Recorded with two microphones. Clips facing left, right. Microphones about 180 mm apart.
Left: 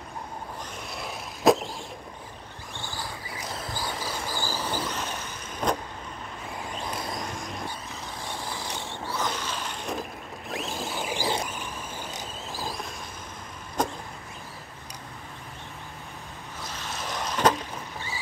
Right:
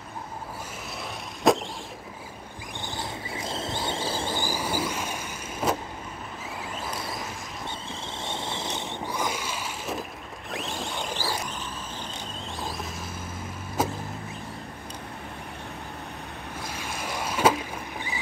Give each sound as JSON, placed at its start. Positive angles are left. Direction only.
{"t": 1.0, "sound": "vehicle", "side_deg": 0}
{"t": 2.8, "sound": "vehicle", "side_deg": -20}
{"t": 4.4, "sound": "vehicle", "side_deg": -10}
{"t": 7.6, "sound": "a sound", "side_deg": -25}
{"t": 12.5, "sound": "vehicle", "side_deg": 0}
{"t": 13.8, "sound": "power windows", "side_deg": -5}
{"t": 16.6, "sound": "boat", "side_deg": -10}